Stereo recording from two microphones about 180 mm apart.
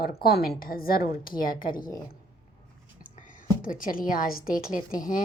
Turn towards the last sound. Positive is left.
turn(degrees=50)  # may be behind; listen again after turning